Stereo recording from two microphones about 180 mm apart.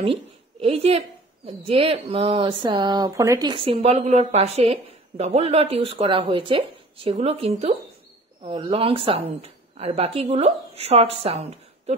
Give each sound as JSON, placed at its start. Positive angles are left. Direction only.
{"t": 0.0, "sound": "a child's voice", "side_deg": -30}